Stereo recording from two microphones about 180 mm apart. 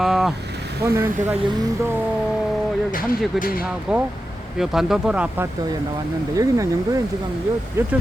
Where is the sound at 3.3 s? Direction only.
55° left (ahead or behind).